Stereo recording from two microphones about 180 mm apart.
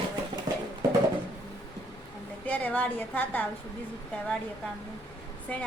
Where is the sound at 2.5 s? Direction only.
10° left (ahead or behind).